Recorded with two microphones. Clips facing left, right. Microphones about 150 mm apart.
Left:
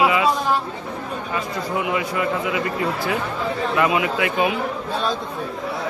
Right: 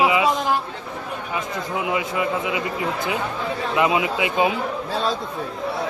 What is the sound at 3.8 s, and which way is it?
Speech, 20° right (ahead or behind).